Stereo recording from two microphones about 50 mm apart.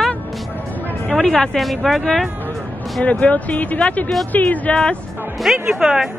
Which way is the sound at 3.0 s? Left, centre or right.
Left.